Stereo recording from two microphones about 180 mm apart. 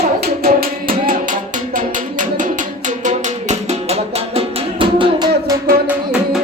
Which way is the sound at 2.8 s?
40° right (ahead or behind).